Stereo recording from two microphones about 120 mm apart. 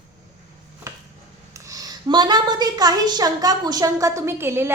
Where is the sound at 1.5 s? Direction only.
30° right (ahead or behind).